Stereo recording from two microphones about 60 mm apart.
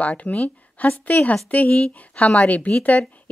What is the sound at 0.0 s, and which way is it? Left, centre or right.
Speech, left.